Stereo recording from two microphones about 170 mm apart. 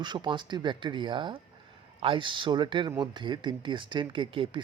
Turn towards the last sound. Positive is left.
turn(degrees=-30)  # may be behind; listen again after turning